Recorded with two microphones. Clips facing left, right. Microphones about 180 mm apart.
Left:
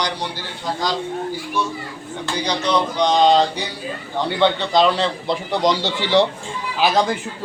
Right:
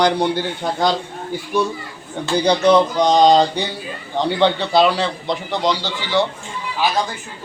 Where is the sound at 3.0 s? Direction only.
40° right (ahead or behind).